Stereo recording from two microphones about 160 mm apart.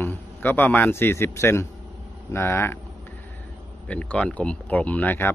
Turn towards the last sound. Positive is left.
turn(degrees=10)  # may be behind; listen again after turning